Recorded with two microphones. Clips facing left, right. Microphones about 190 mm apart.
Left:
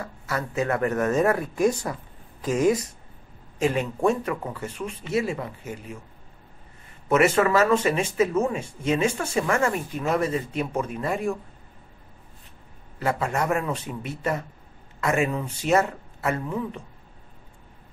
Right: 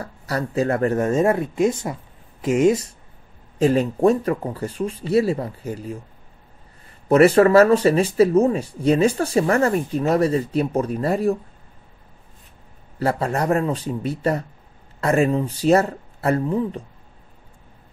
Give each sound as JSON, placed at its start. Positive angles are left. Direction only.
{"t": 0.0, "sound": "speech", "side_deg": -35}
{"t": 3.5, "sound": "speech", "side_deg": -35}
{"t": 7.1, "sound": "speech", "side_deg": -35}
{"t": 13.0, "sound": "speech", "side_deg": -35}